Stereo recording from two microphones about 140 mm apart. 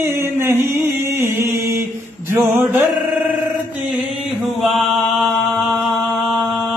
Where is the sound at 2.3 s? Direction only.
15° right (ahead or behind).